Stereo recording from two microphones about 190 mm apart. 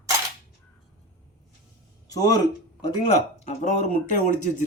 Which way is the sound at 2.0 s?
20° left (ahead or behind).